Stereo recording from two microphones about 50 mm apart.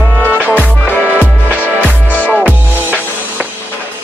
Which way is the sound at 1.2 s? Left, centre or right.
Right.